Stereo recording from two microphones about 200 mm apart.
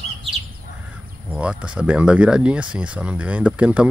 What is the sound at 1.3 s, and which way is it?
Speech, 5° right (ahead or behind).